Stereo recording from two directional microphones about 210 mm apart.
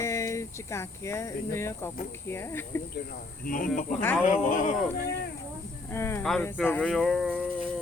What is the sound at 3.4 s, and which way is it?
Speech, 40° left (ahead or behind).